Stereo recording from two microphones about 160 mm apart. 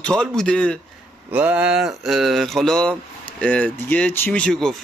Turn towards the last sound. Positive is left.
turn(degrees=5)  # may be behind; listen again after turning